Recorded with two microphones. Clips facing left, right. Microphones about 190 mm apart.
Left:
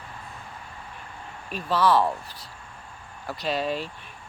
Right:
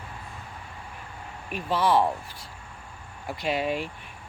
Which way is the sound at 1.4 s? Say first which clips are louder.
Left 1 dB; 15° right (ahead or behind).